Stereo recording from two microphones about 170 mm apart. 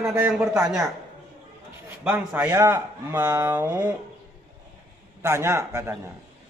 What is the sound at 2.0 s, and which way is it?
Speech, 10° right (ahead or behind).